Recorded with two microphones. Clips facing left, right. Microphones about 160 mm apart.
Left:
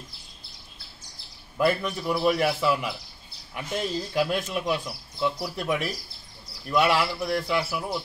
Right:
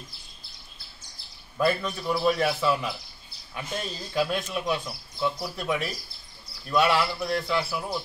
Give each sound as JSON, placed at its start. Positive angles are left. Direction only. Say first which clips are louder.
{"t": 1.6, "sound": "speech", "louder": "left 1 dB", "side_deg": 15}